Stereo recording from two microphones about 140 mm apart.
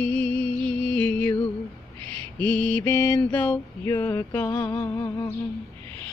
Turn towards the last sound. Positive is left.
turn(degrees=30)  # may be behind; listen again after turning